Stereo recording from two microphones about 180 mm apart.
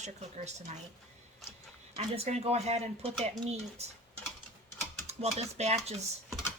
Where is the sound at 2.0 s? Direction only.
40° right (ahead or behind).